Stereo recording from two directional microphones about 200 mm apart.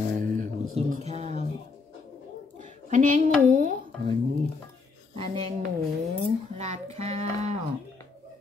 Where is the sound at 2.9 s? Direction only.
40° right (ahead or behind).